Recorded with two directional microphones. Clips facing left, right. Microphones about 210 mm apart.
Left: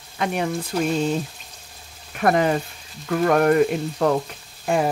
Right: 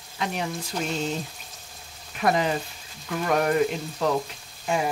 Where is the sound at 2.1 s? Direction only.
55° left (ahead or behind).